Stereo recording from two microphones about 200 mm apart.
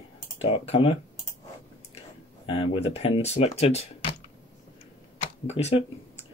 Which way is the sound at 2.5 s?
30° left (ahead or behind).